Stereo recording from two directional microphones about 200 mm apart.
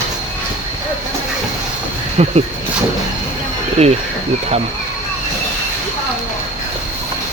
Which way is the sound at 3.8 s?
35° right (ahead or behind).